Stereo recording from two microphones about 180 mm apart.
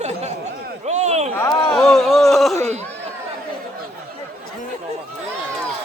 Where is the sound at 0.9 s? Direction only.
40° right (ahead or behind).